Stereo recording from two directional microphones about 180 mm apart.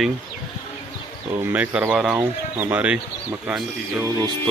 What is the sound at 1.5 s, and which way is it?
Speech, 10° right (ahead or behind).